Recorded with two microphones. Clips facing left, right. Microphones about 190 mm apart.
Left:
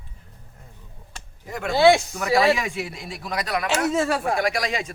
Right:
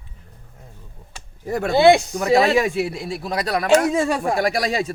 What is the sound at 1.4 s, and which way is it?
Speech, 35° right (ahead or behind).